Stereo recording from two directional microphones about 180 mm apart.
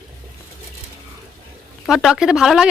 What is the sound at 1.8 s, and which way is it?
Speech, centre (ahead or behind).